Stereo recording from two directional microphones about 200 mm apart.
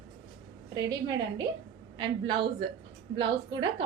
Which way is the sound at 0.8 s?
20° right (ahead or behind).